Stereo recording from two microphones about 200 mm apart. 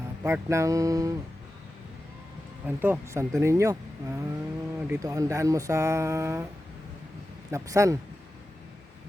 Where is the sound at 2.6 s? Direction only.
10° right (ahead or behind).